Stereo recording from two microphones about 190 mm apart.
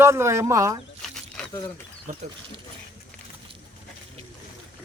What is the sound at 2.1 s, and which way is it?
Speech, 40° right (ahead or behind).